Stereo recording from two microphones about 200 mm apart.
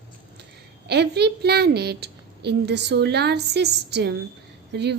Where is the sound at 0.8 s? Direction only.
55° right (ahead or behind).